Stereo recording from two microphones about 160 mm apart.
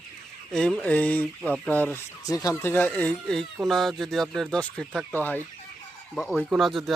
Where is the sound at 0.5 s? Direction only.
5° left (ahead or behind).